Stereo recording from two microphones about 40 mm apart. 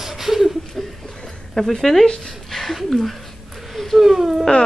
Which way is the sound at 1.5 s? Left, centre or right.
Centre.